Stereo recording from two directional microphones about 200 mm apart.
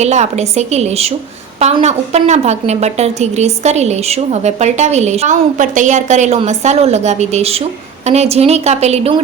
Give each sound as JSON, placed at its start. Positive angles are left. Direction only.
{"t": 0.0, "sound": "a woman's voice", "side_deg": -35}